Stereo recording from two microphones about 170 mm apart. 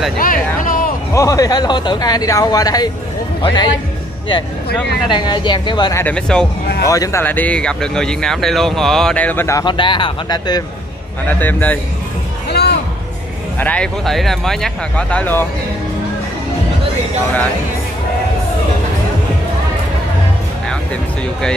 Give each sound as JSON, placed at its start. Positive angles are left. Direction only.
{"t": 0.2, "sound": "speech", "side_deg": 55}
{"t": 1.1, "sound": "speech", "side_deg": 20}
{"t": 5.0, "sound": "speech", "side_deg": 25}
{"t": 6.0, "sound": "speech", "side_deg": 5}
{"t": 6.9, "sound": "speech", "side_deg": 20}
{"t": 11.2, "sound": "speech", "side_deg": 10}
{"t": 12.4, "sound": "music", "side_deg": 75}
{"t": 13.6, "sound": "speech", "side_deg": 5}
{"t": 20.6, "sound": "speech", "side_deg": 5}